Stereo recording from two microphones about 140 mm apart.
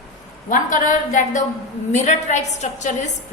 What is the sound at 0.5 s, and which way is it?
A woman's voice, 70° left (ahead or behind).